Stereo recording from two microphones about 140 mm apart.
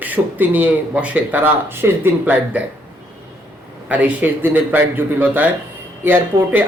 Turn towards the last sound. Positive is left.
turn(degrees=-15)  # may be behind; listen again after turning